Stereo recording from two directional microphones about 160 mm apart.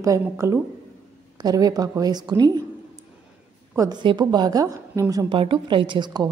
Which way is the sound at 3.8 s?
25° right (ahead or behind).